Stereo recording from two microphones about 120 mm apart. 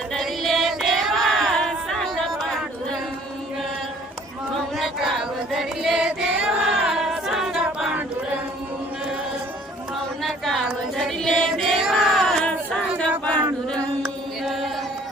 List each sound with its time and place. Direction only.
0.1 s choir: centre (ahead or behind)
4.8 s choir: centre (ahead or behind)
10.2 s a sound: 5° left (ahead or behind)
10.9 s choir: 5° left (ahead or behind)
14.4 s mantra: centre (ahead or behind)